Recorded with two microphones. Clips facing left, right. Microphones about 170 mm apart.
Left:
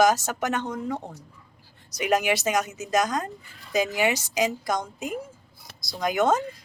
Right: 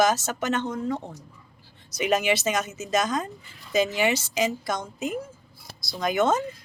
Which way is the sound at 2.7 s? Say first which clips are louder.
Even; 65° left (ahead or behind).